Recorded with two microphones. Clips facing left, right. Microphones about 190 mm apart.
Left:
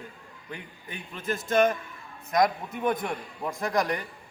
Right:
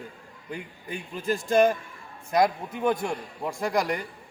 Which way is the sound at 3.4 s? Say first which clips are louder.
Right 1 dB; 10° right (ahead or behind).